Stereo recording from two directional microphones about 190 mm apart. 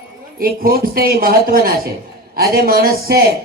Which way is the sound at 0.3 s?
50° right (ahead or behind).